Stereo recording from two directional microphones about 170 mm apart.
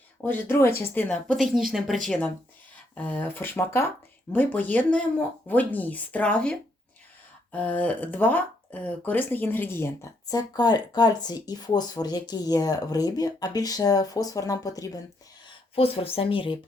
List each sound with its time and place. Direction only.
0.2 s speech: 10° left (ahead or behind)
15.7 s speech: 35° left (ahead or behind)